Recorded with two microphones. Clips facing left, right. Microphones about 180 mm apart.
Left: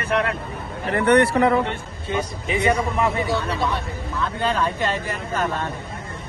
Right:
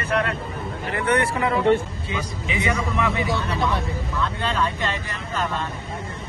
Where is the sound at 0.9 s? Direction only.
60° left (ahead or behind).